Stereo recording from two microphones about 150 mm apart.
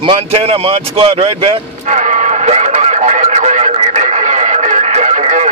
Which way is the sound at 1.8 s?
55° right (ahead or behind).